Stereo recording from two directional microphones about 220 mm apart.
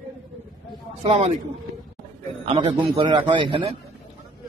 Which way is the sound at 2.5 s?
25° right (ahead or behind).